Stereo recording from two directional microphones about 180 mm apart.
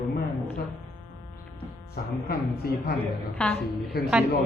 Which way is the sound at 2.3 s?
60° left (ahead or behind).